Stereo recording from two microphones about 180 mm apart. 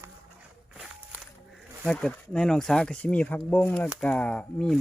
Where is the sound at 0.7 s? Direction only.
5° right (ahead or behind).